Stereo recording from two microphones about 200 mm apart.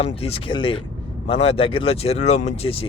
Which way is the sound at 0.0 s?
30° left (ahead or behind).